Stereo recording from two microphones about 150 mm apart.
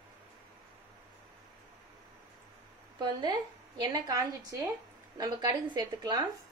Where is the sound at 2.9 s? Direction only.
30° right (ahead or behind).